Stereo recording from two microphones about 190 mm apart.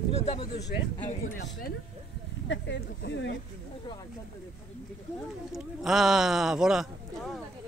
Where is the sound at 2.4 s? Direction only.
70° left (ahead or behind).